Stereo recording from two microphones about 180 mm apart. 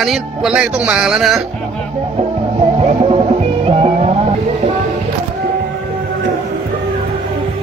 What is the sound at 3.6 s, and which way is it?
Music, 35° right (ahead or behind).